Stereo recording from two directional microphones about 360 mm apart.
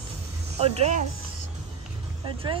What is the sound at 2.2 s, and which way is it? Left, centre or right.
Speech, centre.